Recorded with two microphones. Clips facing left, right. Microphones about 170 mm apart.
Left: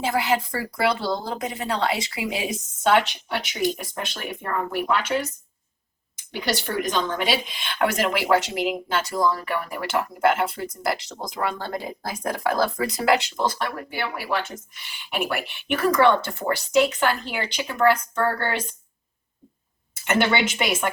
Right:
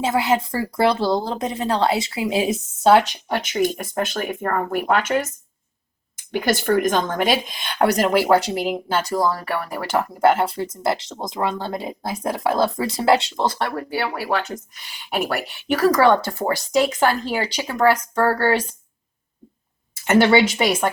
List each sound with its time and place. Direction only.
0.0 s speech: 25° right (ahead or behind); by 5.3 s 45° right (ahead or behind)
6.3 s speech: 50° right (ahead or behind)
20.1 s speech: 35° right (ahead or behind)